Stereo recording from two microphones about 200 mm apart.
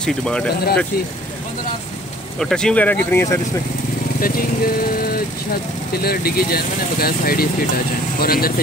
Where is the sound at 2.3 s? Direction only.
5° left (ahead or behind).